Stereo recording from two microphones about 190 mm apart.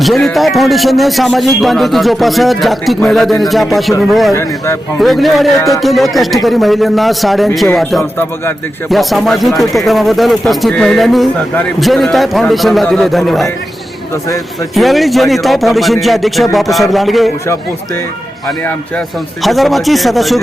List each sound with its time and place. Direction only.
0.0 s speech: centre (ahead or behind)
4.4 s speech: 15° left (ahead or behind)
4.9 s speech: centre (ahead or behind)
5.5 s speech: 15° left (ahead or behind)
5.8 s speech: centre (ahead or behind)
14.8 s speech: centre (ahead or behind)
18.6 s speech: 5° left (ahead or behind)